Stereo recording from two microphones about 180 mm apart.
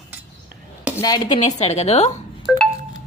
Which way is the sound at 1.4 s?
40° left (ahead or behind).